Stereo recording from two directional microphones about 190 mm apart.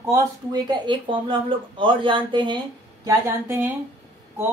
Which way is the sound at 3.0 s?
15° right (ahead or behind).